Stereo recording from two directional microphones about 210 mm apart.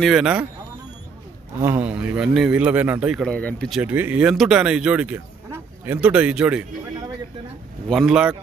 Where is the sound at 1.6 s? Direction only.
10° right (ahead or behind).